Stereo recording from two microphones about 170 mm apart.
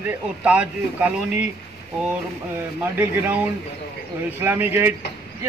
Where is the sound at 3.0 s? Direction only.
10° right (ahead or behind).